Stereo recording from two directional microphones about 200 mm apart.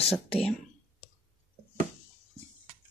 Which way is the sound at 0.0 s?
30° left (ahead or behind).